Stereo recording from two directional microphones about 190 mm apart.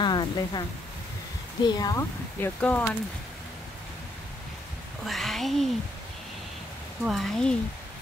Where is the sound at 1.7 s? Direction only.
20° left (ahead or behind).